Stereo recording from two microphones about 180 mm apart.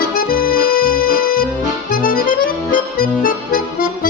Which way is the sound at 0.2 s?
55° left (ahead or behind).